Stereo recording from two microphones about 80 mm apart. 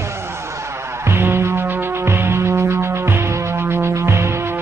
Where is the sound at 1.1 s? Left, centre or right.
Right.